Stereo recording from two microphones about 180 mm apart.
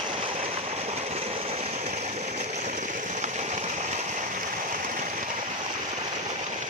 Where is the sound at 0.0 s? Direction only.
30° right (ahead or behind); by 5.7 s 45° right (ahead or behind).